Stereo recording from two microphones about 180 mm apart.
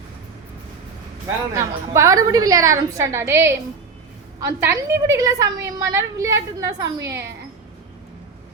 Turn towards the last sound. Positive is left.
turn(degrees=-20)  # may be behind; listen again after turning